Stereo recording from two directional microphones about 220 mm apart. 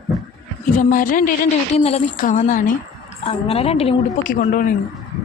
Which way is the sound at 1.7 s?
30° left (ahead or behind).